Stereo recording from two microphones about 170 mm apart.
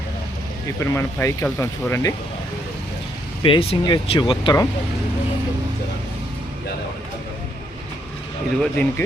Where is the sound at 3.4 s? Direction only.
30° left (ahead or behind).